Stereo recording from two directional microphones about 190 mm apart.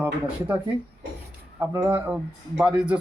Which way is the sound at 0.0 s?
10° right (ahead or behind).